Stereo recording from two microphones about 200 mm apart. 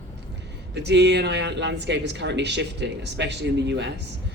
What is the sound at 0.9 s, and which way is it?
A man's voice, 60° right (ahead or behind).